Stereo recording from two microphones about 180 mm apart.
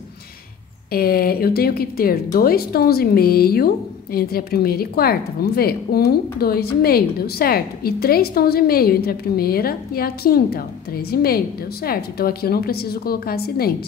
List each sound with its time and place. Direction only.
0.9 s a woman's voice: 55° left (ahead or behind)